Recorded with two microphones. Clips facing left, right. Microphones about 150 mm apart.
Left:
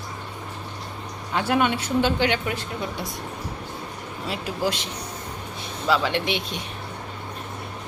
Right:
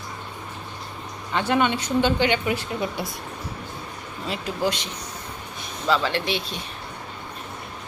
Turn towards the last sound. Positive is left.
turn(degrees=20)  # may be behind; listen again after turning